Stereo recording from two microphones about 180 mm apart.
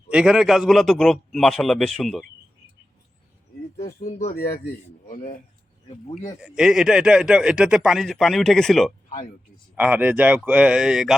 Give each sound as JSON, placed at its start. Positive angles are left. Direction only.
{"t": 0.1, "sound": "speech", "side_deg": -5}
{"t": 5.0, "sound": "speech", "side_deg": 50}
{"t": 6.4, "sound": "speech", "side_deg": -5}
{"t": 9.0, "sound": "speech", "side_deg": 45}
{"t": 9.7, "sound": "speech", "side_deg": -10}